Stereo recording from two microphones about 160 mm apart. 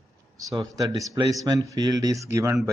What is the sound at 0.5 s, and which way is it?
Speech, 25° right (ahead or behind).